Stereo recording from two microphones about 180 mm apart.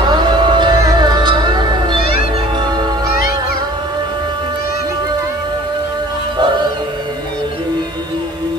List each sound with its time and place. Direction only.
0.0 s music: 25° right (ahead or behind)